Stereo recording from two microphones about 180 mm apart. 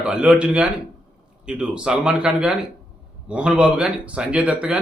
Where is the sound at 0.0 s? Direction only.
5° right (ahead or behind).